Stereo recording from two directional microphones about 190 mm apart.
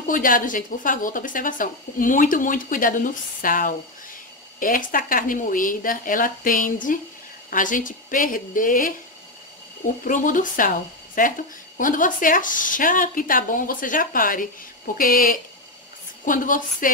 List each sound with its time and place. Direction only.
0.0 s a woman's voice: 45° left (ahead or behind)
10.0 s a woman's voice: 45° left (ahead or behind)